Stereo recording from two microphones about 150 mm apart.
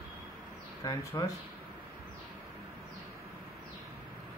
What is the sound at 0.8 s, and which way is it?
Speech, 25° left (ahead or behind).